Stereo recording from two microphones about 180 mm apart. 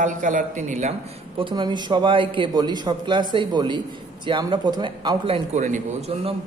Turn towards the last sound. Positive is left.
turn(degrees=-35)  # may be behind; listen again after turning